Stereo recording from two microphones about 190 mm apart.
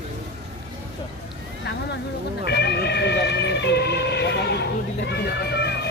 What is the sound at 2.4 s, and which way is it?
Vehicle, 60° left (ahead or behind).